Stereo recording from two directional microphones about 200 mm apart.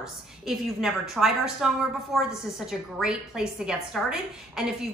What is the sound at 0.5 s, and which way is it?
A woman's voice, centre (ahead or behind).